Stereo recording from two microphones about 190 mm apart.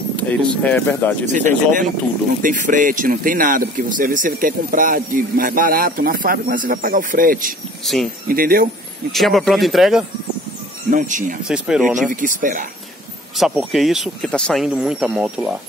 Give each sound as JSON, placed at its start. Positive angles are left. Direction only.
{"t": 0.1, "sound": "speech", "side_deg": 5}
{"t": 1.2, "sound": "speech", "side_deg": -40}
{"t": 7.8, "sound": "speech", "side_deg": 0}
{"t": 8.3, "sound": "speech", "side_deg": -50}
{"t": 9.1, "sound": "speech", "side_deg": 0}
{"t": 10.9, "sound": "speech", "side_deg": -45}
{"t": 11.4, "sound": "speech", "side_deg": -5}
{"t": 12.1, "sound": "speech", "side_deg": -45}
{"t": 13.4, "sound": "speech", "side_deg": 0}